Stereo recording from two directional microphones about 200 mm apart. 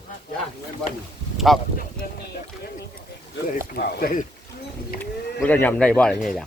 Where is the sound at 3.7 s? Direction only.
50° left (ahead or behind).